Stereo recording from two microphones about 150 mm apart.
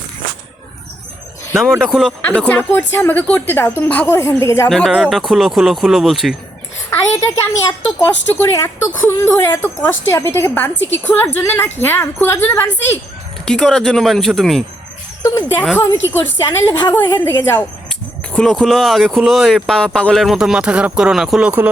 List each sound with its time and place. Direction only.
1.9 s speech: 5° right (ahead or behind)
2.5 s a woman's voice: 10° left (ahead or behind)
4.7 s speech: centre (ahead or behind)
6.9 s a sound: 15° left (ahead or behind)
7.9 s a woman's voice: 15° left (ahead or behind)
15.2 s a woman's voice: 20° left (ahead or behind); by 21.7 s 10° right (ahead or behind)